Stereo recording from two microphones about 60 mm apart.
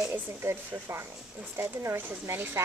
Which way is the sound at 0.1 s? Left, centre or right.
Right.